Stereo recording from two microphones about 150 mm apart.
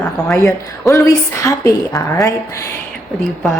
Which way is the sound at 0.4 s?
20° left (ahead or behind).